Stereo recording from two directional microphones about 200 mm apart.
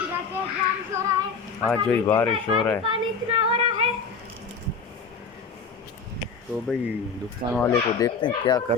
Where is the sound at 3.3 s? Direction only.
30° right (ahead or behind).